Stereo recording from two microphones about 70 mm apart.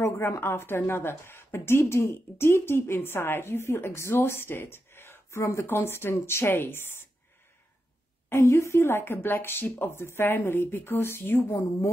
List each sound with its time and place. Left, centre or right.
0.0 s speech: left
8.3 s a woman's voice: left
8.7 s speech: left